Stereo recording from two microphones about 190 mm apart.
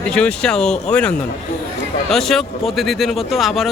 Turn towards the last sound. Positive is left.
turn(degrees=0)  # may be behind; listen again after turning